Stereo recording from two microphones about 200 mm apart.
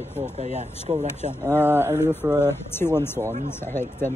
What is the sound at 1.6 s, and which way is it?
Speech, 10° right (ahead or behind).